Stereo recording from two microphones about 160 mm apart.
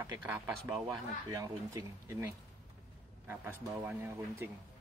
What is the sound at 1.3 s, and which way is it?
Speech, 20° right (ahead or behind).